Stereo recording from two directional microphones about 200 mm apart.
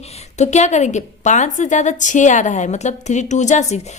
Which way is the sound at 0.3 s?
35° left (ahead or behind).